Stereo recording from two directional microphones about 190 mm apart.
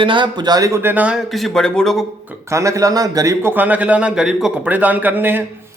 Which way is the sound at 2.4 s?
15° right (ahead or behind).